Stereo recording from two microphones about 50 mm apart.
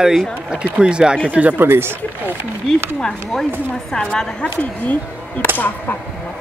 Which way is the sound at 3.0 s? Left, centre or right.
Centre.